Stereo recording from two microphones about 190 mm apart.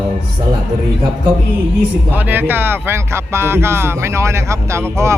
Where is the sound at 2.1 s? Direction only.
10° right (ahead or behind).